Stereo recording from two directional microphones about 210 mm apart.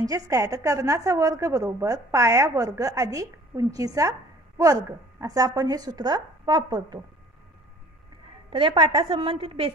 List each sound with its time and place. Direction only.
0.0 s a woman's voice: 15° right (ahead or behind)
5.2 s a woman's voice: 15° right (ahead or behind)
8.5 s a woman's voice: 25° right (ahead or behind)